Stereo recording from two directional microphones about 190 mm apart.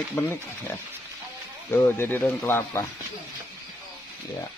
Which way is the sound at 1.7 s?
10° left (ahead or behind).